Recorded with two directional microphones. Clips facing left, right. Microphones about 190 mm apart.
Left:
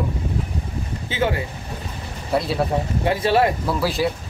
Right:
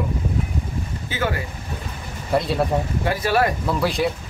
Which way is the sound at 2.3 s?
Centre (ahead or behind).